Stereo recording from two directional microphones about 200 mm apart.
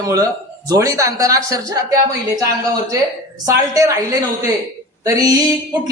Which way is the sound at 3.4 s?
15° right (ahead or behind).